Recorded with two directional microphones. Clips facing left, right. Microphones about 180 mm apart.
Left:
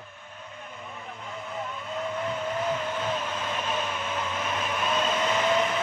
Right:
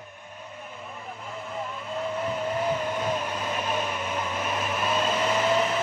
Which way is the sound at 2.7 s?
10° right (ahead or behind).